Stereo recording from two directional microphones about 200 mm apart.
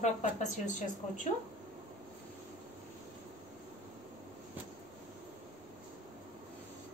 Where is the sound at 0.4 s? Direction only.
40° left (ahead or behind).